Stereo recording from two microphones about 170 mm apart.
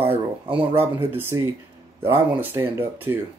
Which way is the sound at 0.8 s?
15° right (ahead or behind).